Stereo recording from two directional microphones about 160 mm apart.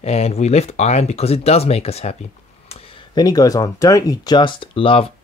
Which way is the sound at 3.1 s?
25° left (ahead or behind).